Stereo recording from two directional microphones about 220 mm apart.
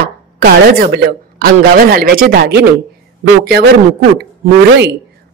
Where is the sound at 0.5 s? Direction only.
45° right (ahead or behind).